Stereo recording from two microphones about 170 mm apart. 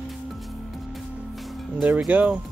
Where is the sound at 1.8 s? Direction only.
5° right (ahead or behind).